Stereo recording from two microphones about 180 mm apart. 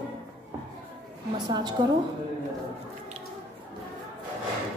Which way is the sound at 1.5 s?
25° right (ahead or behind).